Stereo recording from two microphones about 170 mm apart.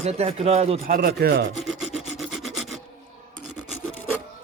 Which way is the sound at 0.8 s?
60° right (ahead or behind).